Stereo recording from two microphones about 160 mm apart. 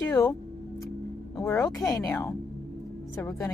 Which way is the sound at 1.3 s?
15° left (ahead or behind).